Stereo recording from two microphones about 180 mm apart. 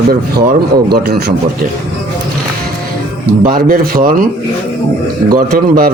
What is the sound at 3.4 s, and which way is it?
Speech, 50° right (ahead or behind).